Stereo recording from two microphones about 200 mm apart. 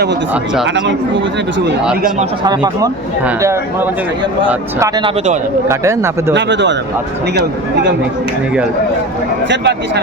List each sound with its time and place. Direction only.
0.6 s speech: 60° right (ahead or behind)
3.2 s speech: 10° right (ahead or behind)
5.0 s a man's voice: 35° right (ahead or behind)
5.6 s speech: 15° right (ahead or behind)
6.3 s speech: 60° right (ahead or behind)
9.5 s speech: 60° right (ahead or behind)